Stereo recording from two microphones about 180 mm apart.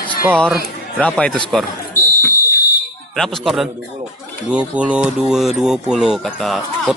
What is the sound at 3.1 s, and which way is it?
Speech, centre (ahead or behind).